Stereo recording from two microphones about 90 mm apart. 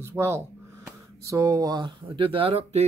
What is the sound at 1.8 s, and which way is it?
Speech, 70° right (ahead or behind).